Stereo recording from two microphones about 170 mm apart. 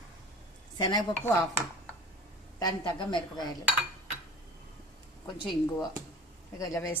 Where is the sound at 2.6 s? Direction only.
30° left (ahead or behind).